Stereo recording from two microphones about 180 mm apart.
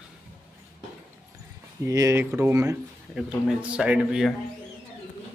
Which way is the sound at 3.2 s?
5° right (ahead or behind).